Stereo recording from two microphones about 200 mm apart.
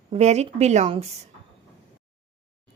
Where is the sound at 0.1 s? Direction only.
35° right (ahead or behind).